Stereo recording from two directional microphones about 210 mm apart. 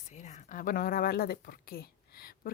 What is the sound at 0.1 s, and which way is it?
Speech, 35° left (ahead or behind).